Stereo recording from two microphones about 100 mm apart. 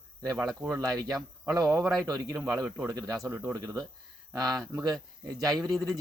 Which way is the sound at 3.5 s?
40° right (ahead or behind).